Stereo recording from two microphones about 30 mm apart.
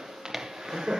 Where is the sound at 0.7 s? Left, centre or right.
Centre.